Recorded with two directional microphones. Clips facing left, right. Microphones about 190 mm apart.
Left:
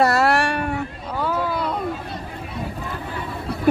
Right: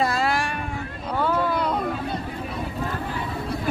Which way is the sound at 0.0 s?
70° left (ahead or behind).